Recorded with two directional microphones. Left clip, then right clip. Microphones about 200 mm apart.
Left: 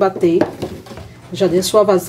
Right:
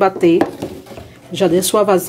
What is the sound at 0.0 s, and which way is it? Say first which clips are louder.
Speech: right 1 dB; 30° right (ahead or behind).